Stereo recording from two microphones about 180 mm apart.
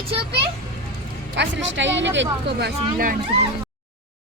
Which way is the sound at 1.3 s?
85° right.